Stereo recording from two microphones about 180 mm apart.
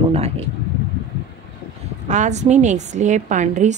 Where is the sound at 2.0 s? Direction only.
40° right (ahead or behind).